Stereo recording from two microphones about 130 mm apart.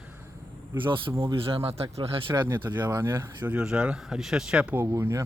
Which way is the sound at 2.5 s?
15° right (ahead or behind).